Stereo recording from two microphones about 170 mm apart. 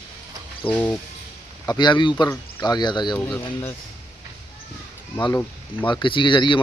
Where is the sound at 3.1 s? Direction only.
10° left (ahead or behind).